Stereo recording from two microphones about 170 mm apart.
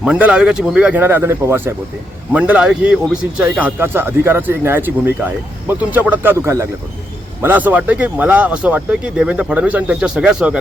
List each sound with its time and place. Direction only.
0.0 s a man's voice: 5° right (ahead or behind)